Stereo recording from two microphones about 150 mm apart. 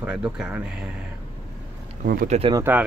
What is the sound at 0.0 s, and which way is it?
Speech, 5° right (ahead or behind).